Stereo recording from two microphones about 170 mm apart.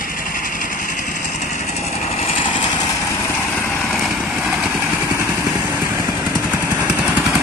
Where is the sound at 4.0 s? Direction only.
5° right (ahead or behind).